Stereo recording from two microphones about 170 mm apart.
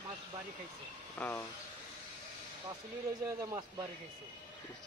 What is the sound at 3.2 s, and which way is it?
Speech, 15° right (ahead or behind).